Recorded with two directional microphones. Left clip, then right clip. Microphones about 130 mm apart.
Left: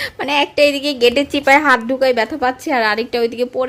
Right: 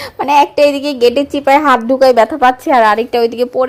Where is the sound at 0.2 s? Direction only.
15° right (ahead or behind).